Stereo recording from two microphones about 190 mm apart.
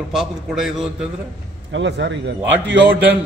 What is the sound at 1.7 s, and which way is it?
Speech, 70° right (ahead or behind).